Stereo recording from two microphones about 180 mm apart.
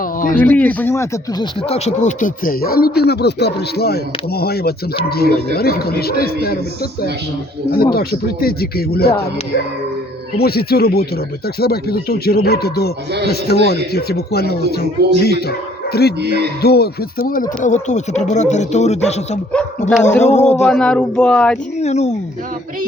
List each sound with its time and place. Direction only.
0.3 s speech: 10° left (ahead or behind)
1.4 s speech: 35° left (ahead or behind); by 6.6 s 60° left (ahead or behind)
7.8 s speech: 55° left (ahead or behind)
10.3 s speech: 60° left (ahead or behind)
17.8 s speech: 40° left (ahead or behind)
19.9 s speech: 5° left (ahead or behind)
20.2 s speech: 40° left (ahead or behind)
20.7 s speech: 5° left (ahead or behind)
21.8 s speech: 40° left (ahead or behind)